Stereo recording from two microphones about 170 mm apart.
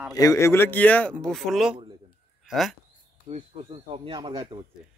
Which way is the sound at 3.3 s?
40° right (ahead or behind).